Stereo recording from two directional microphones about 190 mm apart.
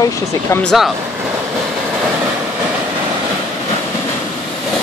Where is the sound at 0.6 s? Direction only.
Centre (ahead or behind).